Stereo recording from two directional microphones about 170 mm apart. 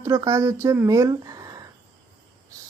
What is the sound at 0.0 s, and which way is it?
Speech, 20° right (ahead or behind).